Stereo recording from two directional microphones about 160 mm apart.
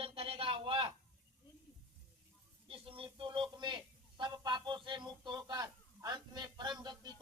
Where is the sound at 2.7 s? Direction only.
35° right (ahead or behind).